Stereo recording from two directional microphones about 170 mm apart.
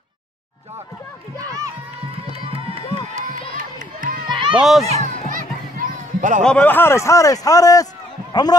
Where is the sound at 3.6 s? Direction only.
50° right (ahead or behind).